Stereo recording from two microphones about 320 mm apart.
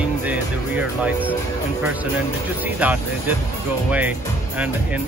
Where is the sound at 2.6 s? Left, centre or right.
Centre.